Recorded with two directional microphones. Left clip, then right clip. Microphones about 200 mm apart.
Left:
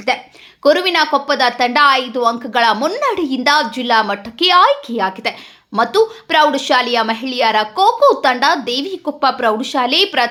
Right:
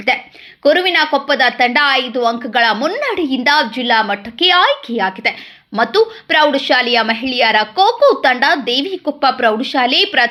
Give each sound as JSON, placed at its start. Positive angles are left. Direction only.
{"t": 0.1, "sound": "a woman's voice", "side_deg": -5}
{"t": 0.6, "sound": "a woman's voice", "side_deg": 5}